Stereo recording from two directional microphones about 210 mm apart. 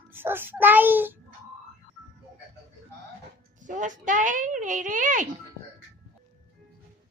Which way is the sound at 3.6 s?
35° right (ahead or behind).